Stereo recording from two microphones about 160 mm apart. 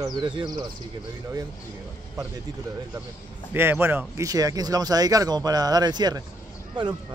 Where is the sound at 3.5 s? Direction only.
15° right (ahead or behind).